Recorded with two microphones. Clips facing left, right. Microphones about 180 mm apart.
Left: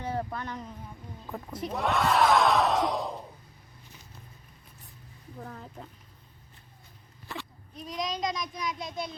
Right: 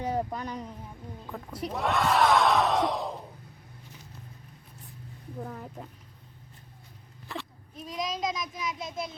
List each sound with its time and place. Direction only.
0.0 s speech: 15° right (ahead or behind); by 3.1 s centre (ahead or behind)
5.4 s speech: 15° right (ahead or behind)
7.3 s speech: centre (ahead or behind)